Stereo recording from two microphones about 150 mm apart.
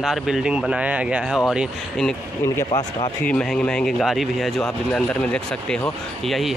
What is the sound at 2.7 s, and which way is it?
Speech, 35° left (ahead or behind).